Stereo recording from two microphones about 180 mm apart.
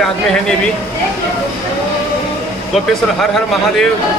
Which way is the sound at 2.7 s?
Centre (ahead or behind).